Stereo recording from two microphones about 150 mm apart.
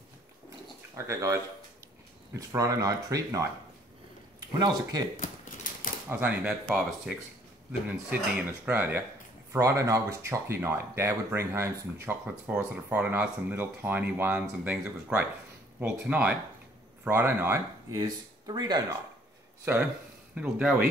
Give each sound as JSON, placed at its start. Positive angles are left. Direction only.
{"t": 0.9, "sound": "speech", "side_deg": -20}
{"t": 5.1, "sound": "typewriter", "side_deg": 70}
{"t": 6.0, "sound": "speech", "side_deg": -15}
{"t": 19.6, "sound": "speech", "side_deg": -15}